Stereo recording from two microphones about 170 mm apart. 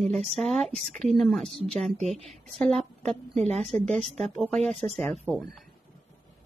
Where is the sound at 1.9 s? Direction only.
40° right (ahead or behind).